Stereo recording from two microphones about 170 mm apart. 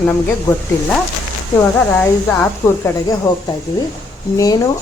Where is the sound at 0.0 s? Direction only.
10° left (ahead or behind).